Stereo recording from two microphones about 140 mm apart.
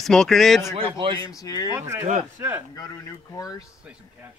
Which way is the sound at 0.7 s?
35° right (ahead or behind).